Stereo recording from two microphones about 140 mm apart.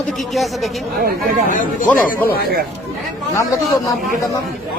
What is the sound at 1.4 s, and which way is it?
Speech, 70° left (ahead or behind).